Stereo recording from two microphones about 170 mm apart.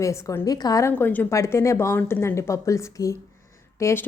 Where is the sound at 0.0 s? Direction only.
20° left (ahead or behind).